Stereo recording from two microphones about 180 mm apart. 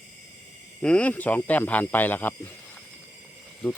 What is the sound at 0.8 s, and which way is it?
Speech, 5° left (ahead or behind).